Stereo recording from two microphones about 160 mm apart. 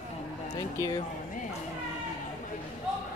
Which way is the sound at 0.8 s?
20° left (ahead or behind).